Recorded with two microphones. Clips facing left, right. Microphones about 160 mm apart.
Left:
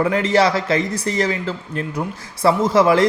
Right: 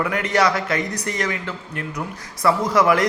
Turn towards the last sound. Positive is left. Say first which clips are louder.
# left 3 dB
turn(degrees=25)  # may be behind; listen again after turning